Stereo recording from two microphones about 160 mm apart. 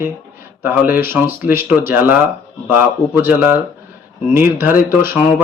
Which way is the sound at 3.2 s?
15° right (ahead or behind).